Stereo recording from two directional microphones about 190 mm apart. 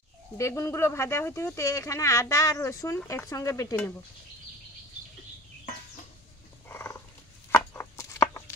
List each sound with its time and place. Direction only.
0.4 s speech: 15° left (ahead or behind)
6.7 s purr: 15° left (ahead or behind)
7.5 s a sound: 15° left (ahead or behind)